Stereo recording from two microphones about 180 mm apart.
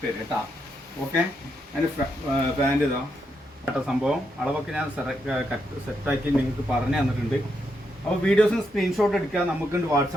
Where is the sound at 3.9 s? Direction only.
5° right (ahead or behind).